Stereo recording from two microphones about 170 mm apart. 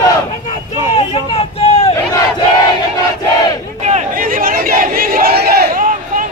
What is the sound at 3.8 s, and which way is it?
Crowd, 40° right (ahead or behind).